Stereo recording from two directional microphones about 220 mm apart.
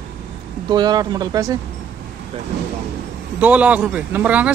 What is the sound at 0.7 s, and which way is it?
Speech, 20° right (ahead or behind).